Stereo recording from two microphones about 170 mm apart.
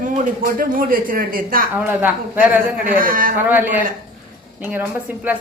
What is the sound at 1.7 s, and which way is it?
Speech, 10° right (ahead or behind).